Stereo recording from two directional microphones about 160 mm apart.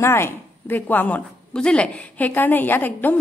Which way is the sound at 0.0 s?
15° left (ahead or behind).